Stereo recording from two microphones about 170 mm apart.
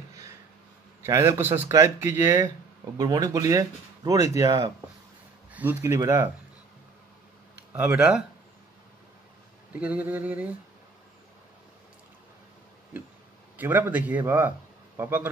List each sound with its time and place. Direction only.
1.0 s speech: 15° right (ahead or behind)
7.7 s speech: 10° right (ahead or behind)
9.8 s speech: 10° right (ahead or behind)
13.6 s speech: 10° right (ahead or behind)